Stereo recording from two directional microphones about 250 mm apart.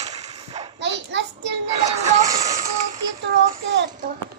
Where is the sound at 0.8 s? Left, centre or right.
Right.